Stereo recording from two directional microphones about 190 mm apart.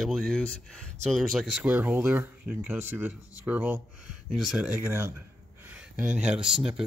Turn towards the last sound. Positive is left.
turn(degrees=-5)  # may be behind; listen again after turning